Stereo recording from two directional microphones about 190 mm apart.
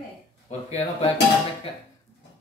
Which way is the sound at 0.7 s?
35° left (ahead or behind).